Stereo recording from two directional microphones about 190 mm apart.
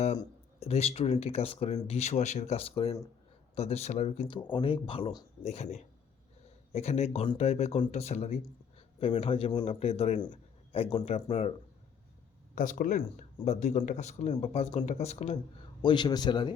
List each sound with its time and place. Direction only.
0.2 s speech: 30° left (ahead or behind)
12.5 s speech: 45° left (ahead or behind)
15.8 s speech: 25° left (ahead or behind)